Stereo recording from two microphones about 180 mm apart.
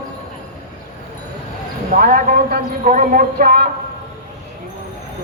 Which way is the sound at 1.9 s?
50° right (ahead or behind).